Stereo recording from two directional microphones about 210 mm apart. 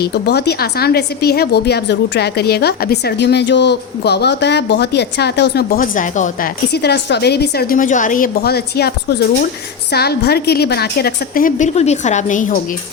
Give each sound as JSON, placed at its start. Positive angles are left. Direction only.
{"t": 0.0, "sound": "a woman's voice", "side_deg": 50}
{"t": 6.7, "sound": "a woman's voice", "side_deg": 50}